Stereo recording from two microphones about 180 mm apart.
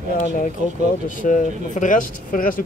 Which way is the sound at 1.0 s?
45° left (ahead or behind).